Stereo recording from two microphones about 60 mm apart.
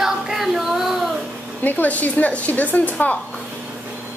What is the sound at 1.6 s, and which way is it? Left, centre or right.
A woman's voice, left.